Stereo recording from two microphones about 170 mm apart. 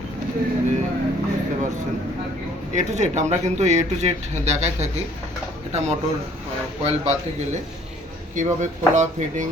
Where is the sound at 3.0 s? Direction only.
40° right (ahead or behind).